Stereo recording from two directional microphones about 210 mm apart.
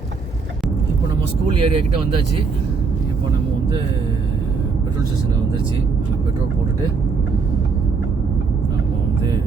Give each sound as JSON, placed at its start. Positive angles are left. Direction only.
{"t": 1.5, "sound": "speech", "side_deg": -25}